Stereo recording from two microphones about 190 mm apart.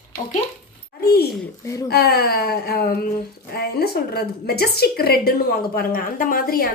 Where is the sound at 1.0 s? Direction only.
55° left (ahead or behind).